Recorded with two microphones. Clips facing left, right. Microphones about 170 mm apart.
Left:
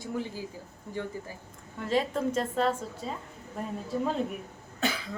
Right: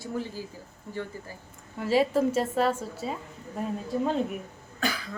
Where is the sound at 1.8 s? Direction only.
5° right (ahead or behind).